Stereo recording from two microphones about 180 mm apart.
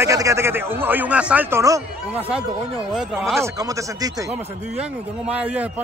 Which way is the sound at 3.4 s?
20° right (ahead or behind).